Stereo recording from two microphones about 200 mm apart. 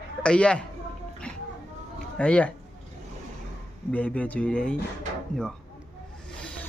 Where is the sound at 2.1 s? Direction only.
5° left (ahead or behind).